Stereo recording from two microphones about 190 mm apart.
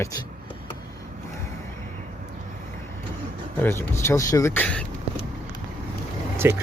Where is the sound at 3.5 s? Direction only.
10° left (ahead or behind).